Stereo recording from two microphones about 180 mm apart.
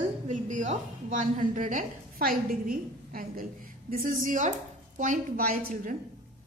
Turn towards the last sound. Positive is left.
turn(degrees=-50)  # may be behind; listen again after turning